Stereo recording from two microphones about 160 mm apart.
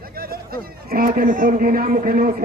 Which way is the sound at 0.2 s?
70° right (ahead or behind).